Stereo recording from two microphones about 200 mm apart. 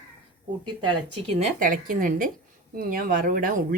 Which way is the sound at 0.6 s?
25° right (ahead or behind).